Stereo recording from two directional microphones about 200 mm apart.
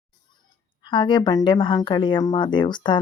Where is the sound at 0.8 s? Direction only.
25° left (ahead or behind).